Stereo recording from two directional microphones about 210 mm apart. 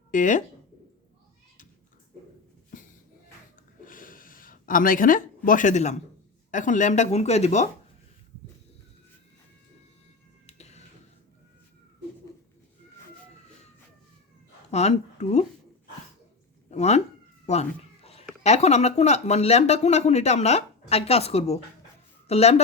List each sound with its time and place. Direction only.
0.1 s speech: 35° left (ahead or behind)
2.7 s music: 40° left (ahead or behind)
3.8 s a sound: 40° left (ahead or behind)
5.5 s speech: 35° left (ahead or behind)
10.4 s a sound: 30° left (ahead or behind)
14.7 s speech: 30° left (ahead or behind)
16.6 s speech: 30° left (ahead or behind)
17.4 s a sound: 30° left (ahead or behind)
18.4 s a woman's voice: 30° left (ahead or behind)